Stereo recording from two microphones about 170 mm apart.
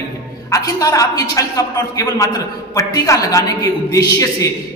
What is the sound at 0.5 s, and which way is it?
A woman's voice, 20° left (ahead or behind).